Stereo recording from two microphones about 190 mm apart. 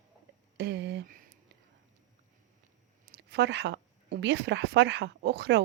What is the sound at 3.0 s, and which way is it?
A woman's voice, 65° right (ahead or behind).